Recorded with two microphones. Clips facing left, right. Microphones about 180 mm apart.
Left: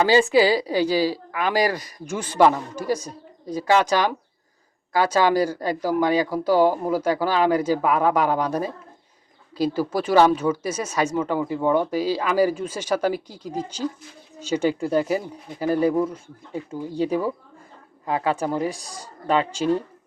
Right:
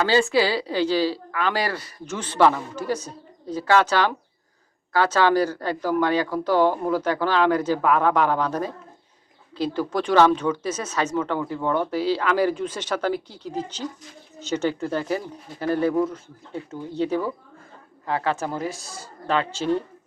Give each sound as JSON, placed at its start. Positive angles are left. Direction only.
{"t": 0.0, "sound": "speech", "side_deg": 15}